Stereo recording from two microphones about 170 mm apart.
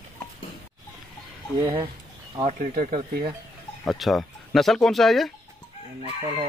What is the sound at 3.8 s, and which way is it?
Speech, centre (ahead or behind).